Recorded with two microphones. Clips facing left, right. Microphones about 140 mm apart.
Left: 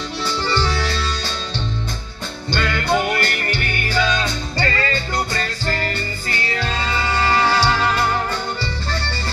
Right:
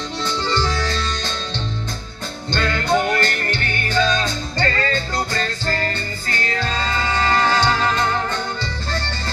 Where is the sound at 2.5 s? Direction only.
10° left (ahead or behind).